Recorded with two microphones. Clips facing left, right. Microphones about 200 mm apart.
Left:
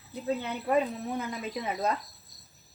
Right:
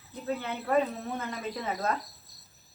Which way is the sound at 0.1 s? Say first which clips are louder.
Left 2 dB; 15° left (ahead or behind).